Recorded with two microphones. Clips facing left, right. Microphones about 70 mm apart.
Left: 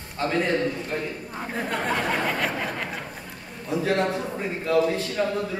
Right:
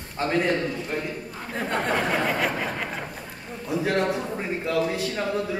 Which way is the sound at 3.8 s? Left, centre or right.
Centre.